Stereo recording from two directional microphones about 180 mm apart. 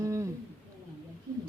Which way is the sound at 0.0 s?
15° right (ahead or behind).